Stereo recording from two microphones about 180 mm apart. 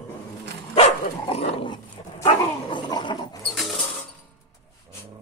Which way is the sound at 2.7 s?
25° left (ahead or behind).